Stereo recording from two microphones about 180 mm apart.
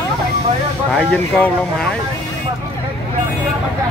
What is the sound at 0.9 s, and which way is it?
Speech, 5° left (ahead or behind).